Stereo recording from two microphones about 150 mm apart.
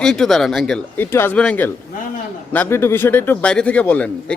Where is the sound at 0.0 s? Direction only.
5° left (ahead or behind).